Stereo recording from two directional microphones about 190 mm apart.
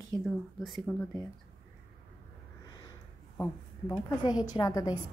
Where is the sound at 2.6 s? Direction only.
20° left (ahead or behind).